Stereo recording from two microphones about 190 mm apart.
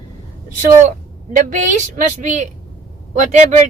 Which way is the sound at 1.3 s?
40° right (ahead or behind).